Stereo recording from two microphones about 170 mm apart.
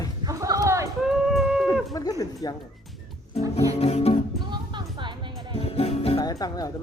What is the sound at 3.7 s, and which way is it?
Music, 35° left (ahead or behind).